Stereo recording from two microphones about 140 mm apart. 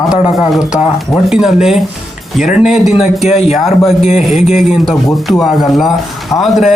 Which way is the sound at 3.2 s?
50° left (ahead or behind).